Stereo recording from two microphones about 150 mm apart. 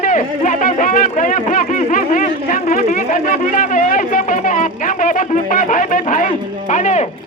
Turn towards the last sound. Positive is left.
turn(degrees=55)  # may be behind; listen again after turning